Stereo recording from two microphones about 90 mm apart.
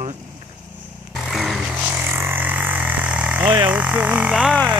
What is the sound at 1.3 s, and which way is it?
Vehicle, centre (ahead or behind).